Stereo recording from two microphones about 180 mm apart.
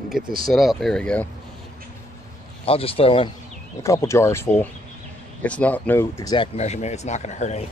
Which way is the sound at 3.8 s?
15° left (ahead or behind).